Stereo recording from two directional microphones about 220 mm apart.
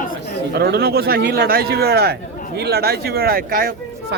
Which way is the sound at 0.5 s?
45° right (ahead or behind).